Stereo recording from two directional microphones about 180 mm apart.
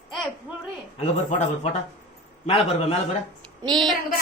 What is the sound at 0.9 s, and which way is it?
Speech, 35° left (ahead or behind).